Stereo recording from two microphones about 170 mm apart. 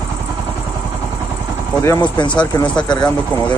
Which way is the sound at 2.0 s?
25° left (ahead or behind).